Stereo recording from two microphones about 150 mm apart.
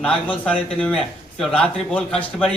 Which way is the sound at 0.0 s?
10° left (ahead or behind).